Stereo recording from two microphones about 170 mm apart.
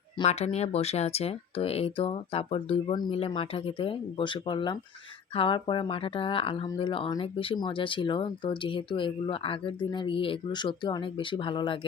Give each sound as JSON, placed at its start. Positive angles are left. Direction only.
{"t": 0.3, "sound": "speech", "side_deg": 40}